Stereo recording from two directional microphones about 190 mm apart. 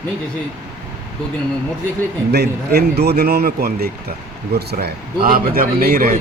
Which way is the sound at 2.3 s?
60° right (ahead or behind).